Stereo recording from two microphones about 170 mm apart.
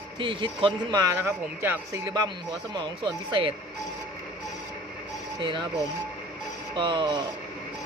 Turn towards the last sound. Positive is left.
turn(degrees=-25)  # may be behind; listen again after turning